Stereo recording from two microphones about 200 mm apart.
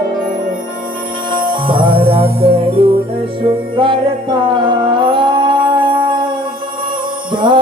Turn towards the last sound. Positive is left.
turn(degrees=-25)  # may be behind; listen again after turning